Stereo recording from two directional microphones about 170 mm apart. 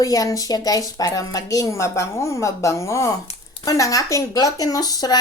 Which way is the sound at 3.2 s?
30° left (ahead or behind).